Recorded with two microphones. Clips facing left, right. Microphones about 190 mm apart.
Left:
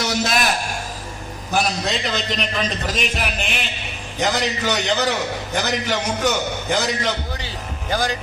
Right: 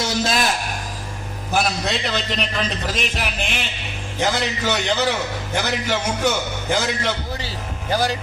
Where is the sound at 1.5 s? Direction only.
10° right (ahead or behind).